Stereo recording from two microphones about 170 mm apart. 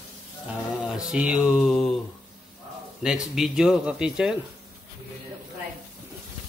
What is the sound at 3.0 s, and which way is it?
A man's voice, 5° right (ahead or behind).